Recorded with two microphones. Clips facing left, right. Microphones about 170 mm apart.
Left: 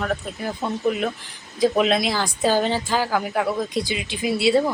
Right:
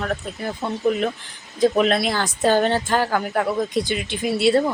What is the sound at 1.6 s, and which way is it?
Speech, 5° left (ahead or behind).